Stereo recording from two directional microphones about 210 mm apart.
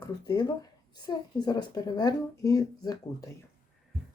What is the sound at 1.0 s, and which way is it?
Speech, 20° left (ahead or behind).